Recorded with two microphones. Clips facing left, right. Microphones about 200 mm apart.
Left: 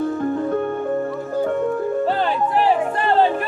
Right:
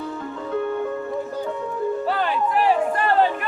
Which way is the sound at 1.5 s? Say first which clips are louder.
Left 7 dB; 55° left (ahead or behind).